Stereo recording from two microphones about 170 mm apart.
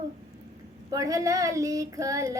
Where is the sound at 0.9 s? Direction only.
20° right (ahead or behind).